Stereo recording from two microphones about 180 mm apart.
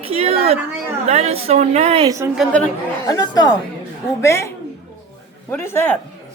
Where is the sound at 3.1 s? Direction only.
20° left (ahead or behind).